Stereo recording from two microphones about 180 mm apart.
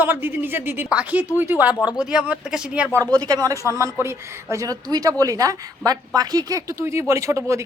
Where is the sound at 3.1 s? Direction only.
20° right (ahead or behind).